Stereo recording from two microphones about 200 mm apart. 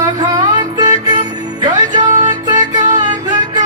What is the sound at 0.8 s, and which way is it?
Music, 20° right (ahead or behind).